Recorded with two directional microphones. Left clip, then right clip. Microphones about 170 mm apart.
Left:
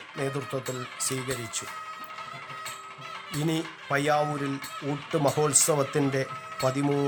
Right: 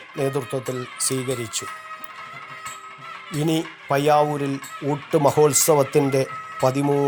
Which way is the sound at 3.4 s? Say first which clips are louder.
Right 7 dB; 20° right (ahead or behind).